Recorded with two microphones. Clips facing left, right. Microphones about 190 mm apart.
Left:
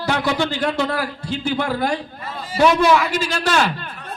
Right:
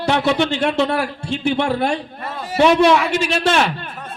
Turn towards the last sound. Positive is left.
turn(degrees=-25)  # may be behind; listen again after turning